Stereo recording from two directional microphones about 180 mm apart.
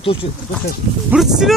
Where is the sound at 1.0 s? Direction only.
5° right (ahead or behind).